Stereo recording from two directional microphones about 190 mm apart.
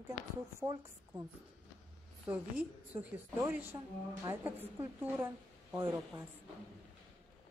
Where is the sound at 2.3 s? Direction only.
10° right (ahead or behind).